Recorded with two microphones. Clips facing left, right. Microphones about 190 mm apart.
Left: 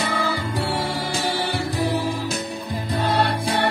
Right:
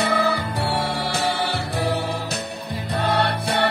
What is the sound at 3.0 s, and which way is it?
Music, 65° right (ahead or behind).